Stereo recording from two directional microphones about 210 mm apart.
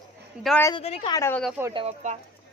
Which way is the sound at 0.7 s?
30° left (ahead or behind).